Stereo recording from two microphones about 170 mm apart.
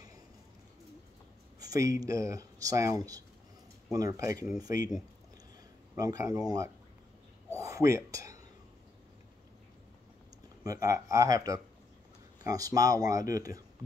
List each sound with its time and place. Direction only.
1.6 s speech: 20° right (ahead or behind)
7.5 s a sound: 20° right (ahead or behind)
10.6 s speech: 20° right (ahead or behind)